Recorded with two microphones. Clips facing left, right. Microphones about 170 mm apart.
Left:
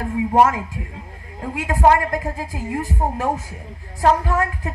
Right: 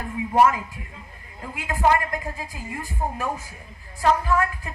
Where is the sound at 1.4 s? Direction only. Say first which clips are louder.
Left 6 dB; 75° left (ahead or behind).